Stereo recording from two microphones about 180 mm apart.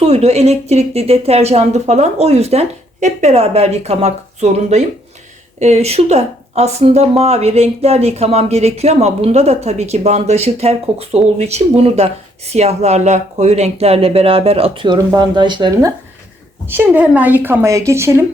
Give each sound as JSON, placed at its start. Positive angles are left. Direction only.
{"t": 0.0, "sound": "speech", "side_deg": -35}
{"t": 16.6, "sound": "a woman's voice", "side_deg": -10}